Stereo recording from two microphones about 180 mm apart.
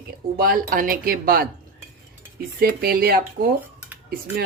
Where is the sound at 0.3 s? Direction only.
55° right (ahead or behind).